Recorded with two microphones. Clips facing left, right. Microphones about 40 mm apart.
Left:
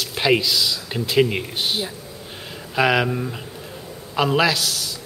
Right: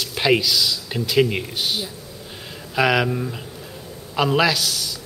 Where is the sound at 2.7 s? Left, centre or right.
Centre.